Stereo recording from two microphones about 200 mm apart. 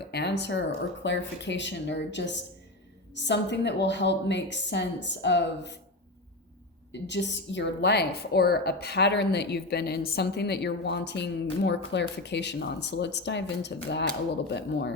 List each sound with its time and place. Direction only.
0.1 s a woman's voice: 55° left (ahead or behind)
6.9 s a woman's voice: 60° left (ahead or behind)